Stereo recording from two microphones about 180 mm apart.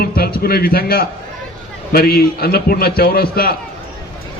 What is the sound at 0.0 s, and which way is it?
A man's voice, 55° left (ahead or behind).